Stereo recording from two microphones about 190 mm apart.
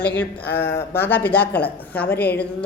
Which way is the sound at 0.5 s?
10° left (ahead or behind).